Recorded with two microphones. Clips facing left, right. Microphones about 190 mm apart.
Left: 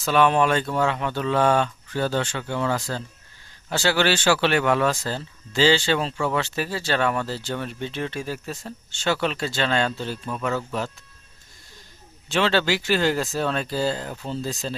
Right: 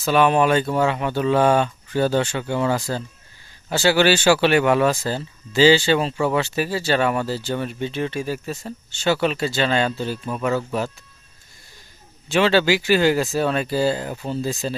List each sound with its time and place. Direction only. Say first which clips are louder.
0.0 s speech: right 2 dB; 5° right (ahead or behind)
12.3 s speech: right 4 dB; 10° right (ahead or behind)